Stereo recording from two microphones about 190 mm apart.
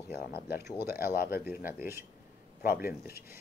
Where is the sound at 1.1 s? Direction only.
50° left (ahead or behind).